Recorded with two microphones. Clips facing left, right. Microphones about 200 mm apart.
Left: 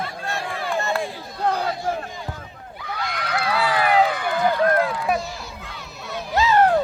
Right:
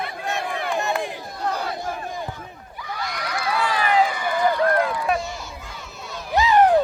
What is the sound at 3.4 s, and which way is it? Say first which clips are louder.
Run: left 2 dB; 65° left (ahead or behind).